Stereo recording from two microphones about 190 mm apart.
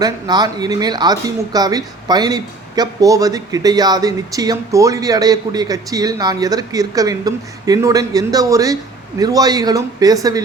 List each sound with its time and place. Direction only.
0.0 s speech: 20° right (ahead or behind)